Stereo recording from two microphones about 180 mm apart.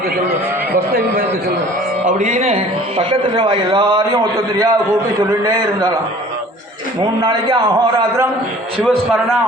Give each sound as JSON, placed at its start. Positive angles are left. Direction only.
{"t": 2.0, "sound": "a man's voice", "side_deg": -45}
{"t": 7.0, "sound": "a man's voice", "side_deg": -25}
{"t": 8.8, "sound": "a man's voice", "side_deg": 5}